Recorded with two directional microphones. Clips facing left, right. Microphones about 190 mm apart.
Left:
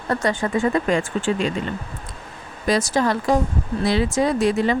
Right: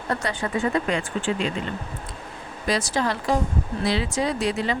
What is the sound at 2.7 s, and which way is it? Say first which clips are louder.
Speech: left 5 dB; 45° left (ahead or behind).